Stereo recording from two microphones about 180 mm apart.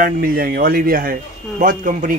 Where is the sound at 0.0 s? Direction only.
55° right (ahead or behind).